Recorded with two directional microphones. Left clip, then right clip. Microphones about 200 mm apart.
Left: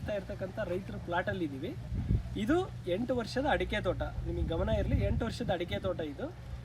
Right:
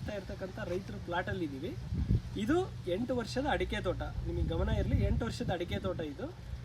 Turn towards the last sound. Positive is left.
turn(degrees=-5)  # may be behind; listen again after turning